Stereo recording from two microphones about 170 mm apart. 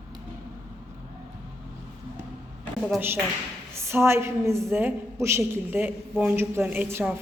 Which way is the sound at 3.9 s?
15° right (ahead or behind).